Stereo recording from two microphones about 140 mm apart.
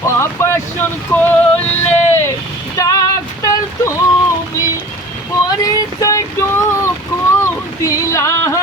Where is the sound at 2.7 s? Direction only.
25° left (ahead or behind).